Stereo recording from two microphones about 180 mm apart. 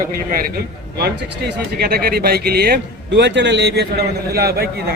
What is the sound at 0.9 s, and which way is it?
Speech, 65° right (ahead or behind).